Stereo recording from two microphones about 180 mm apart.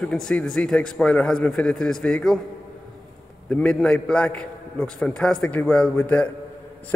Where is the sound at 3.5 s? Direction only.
5° left (ahead or behind).